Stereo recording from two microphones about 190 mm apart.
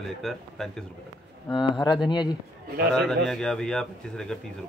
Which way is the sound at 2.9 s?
Centre (ahead or behind).